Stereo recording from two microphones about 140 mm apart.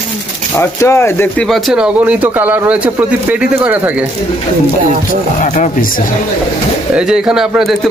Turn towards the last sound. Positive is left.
turn(degrees=0)  # may be behind; listen again after turning